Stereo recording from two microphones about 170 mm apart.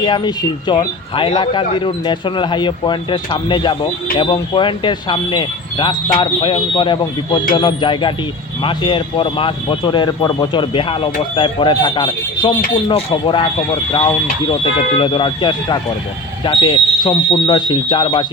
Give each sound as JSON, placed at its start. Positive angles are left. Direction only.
{"t": 0.0, "sound": "speech", "side_deg": 30}